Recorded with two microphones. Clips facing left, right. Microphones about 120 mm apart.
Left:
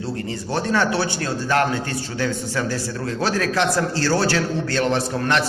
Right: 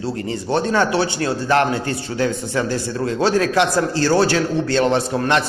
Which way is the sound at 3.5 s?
15° right (ahead or behind).